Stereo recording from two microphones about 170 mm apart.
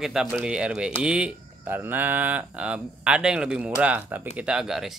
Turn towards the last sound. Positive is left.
turn(degrees=0)  # may be behind; listen again after turning